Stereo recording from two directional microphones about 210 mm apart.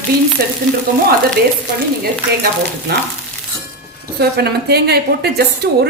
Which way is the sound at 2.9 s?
50° right (ahead or behind).